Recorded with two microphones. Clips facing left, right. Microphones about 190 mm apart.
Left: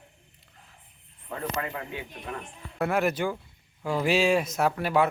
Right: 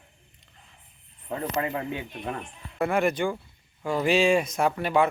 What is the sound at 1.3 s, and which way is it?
Speech, 25° right (ahead or behind).